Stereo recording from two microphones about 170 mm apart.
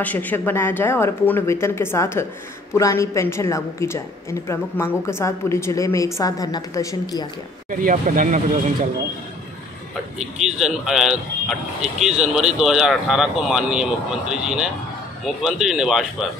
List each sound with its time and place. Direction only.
0.0 s speech: 10° left (ahead or behind)
7.7 s speech: 55° right (ahead or behind)
10.6 s speech: 5° right (ahead or behind)